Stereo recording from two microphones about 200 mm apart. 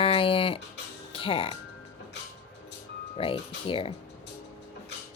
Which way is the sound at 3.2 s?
25° left (ahead or behind).